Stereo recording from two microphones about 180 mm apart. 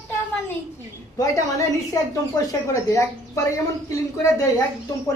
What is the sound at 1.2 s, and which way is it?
A woman's voice, 20° left (ahead or behind).